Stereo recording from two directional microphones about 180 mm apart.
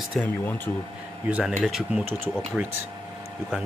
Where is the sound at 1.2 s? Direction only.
5° right (ahead or behind).